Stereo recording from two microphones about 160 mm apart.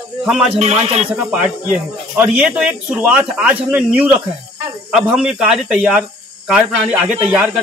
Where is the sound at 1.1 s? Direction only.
10° right (ahead or behind).